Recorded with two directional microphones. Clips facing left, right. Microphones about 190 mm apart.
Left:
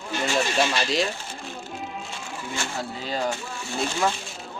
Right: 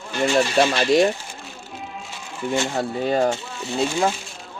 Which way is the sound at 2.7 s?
55° right (ahead or behind).